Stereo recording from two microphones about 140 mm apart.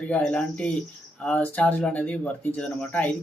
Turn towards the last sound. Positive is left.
turn(degrees=10)  # may be behind; listen again after turning